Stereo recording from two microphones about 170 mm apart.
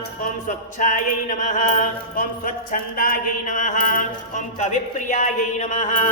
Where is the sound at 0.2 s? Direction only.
50° left (ahead or behind).